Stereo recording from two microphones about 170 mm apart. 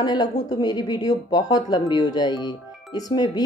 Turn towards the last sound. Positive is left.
turn(degrees=25)  # may be behind; listen again after turning